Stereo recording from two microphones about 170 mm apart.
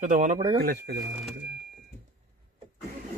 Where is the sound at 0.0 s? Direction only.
50° right (ahead or behind).